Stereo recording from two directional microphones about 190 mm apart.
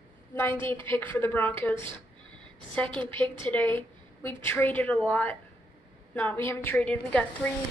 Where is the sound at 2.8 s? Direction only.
25° right (ahead or behind).